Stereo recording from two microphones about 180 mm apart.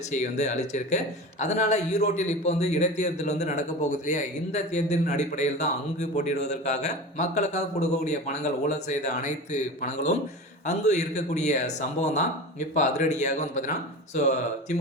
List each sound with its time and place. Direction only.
0.1 s speech: 40° left (ahead or behind)